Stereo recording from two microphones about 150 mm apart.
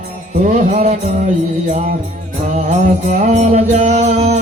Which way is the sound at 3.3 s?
45° right (ahead or behind).